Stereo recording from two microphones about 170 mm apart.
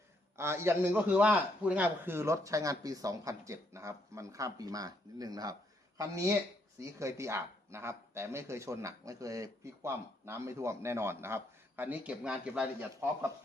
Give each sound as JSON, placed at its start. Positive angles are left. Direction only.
{"t": 0.3, "sound": "speech", "side_deg": -15}
{"t": 13.0, "sound": "speech", "side_deg": -15}